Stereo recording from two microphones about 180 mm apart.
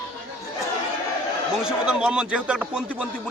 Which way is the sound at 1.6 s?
5° right (ahead or behind).